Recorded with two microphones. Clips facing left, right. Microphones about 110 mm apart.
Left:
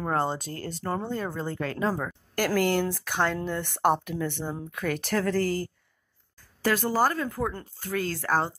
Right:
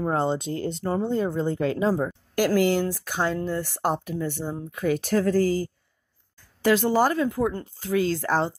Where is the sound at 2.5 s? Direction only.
50° left (ahead or behind).